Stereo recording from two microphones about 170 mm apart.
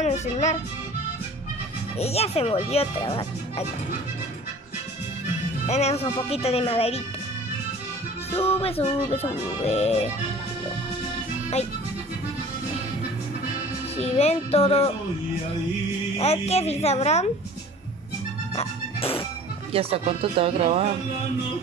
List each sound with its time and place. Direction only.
0.0 s speech: 45° left (ahead or behind)
2.0 s speech: 35° left (ahead or behind)
5.7 s speech: 40° left (ahead or behind)
8.3 s speech: 35° left (ahead or behind)
13.9 s speech: 40° left (ahead or behind)
16.2 s speech: 40° left (ahead or behind)
18.5 s music: 35° left (ahead or behind)
19.7 s speech: 35° right (ahead or behind)